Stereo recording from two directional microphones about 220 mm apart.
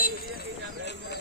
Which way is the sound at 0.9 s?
50° left (ahead or behind).